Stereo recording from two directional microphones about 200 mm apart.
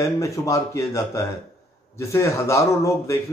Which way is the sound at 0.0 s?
15° left (ahead or behind).